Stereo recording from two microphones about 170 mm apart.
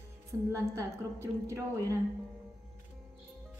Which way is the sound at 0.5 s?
15° right (ahead or behind).